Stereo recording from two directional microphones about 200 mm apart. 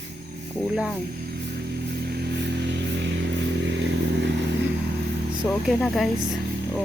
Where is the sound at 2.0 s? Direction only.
55° right (ahead or behind).